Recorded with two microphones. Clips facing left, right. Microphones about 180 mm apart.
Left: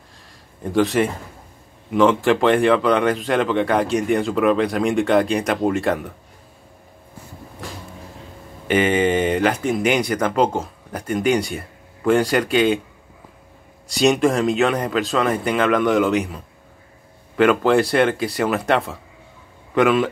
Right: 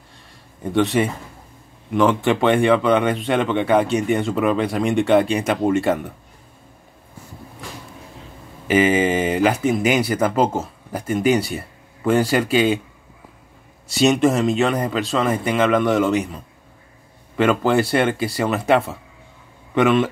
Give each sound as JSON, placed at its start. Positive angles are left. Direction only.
{"t": 0.7, "sound": "speech", "side_deg": 0}
{"t": 8.6, "sound": "speech", "side_deg": -5}
{"t": 13.8, "sound": "speech", "side_deg": 0}
{"t": 17.4, "sound": "speech", "side_deg": 0}